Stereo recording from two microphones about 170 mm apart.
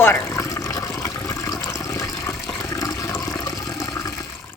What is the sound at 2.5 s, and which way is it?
Toilet flush, 15° left (ahead or behind).